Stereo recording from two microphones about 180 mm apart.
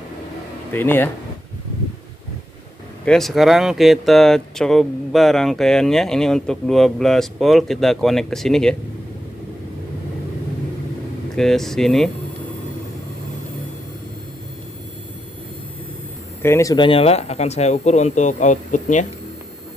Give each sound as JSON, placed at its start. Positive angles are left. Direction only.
{"t": 0.7, "sound": "speech", "side_deg": 10}
{"t": 3.1, "sound": "speech", "side_deg": 0}
{"t": 11.3, "sound": "speech", "side_deg": 0}
{"t": 16.4, "sound": "speech", "side_deg": 15}